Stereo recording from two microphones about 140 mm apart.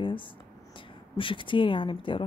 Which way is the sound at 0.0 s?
35° left (ahead or behind).